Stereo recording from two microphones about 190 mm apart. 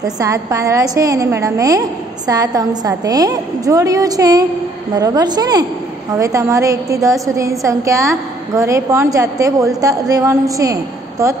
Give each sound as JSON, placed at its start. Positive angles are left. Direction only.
{"t": 0.0, "sound": "a woman's voice", "side_deg": -15}